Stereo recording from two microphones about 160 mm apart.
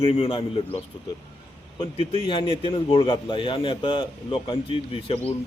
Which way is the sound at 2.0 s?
30° left (ahead or behind).